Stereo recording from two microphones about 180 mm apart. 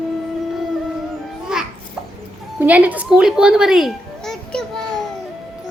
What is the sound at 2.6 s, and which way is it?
A child's voice, 10° right (ahead or behind).